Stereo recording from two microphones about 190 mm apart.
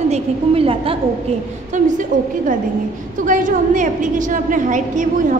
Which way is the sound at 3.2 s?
45° right (ahead or behind).